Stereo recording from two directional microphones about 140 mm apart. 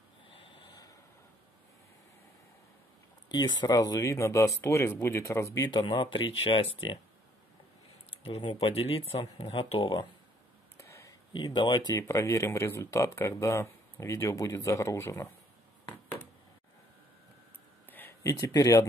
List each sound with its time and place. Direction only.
0.3 s snort: 35° left (ahead or behind)
3.3 s speech: 30° left (ahead or behind)
5.7 s speech: 35° left (ahead or behind)
8.3 s speech: 40° left (ahead or behind)
10.8 s a sound: 20° left (ahead or behind)
11.3 s speech: 35° left (ahead or behind)
11.9 s speech: 20° left (ahead or behind)
17.9 s a sound: 15° left (ahead or behind)
18.4 s speech: 25° left (ahead or behind)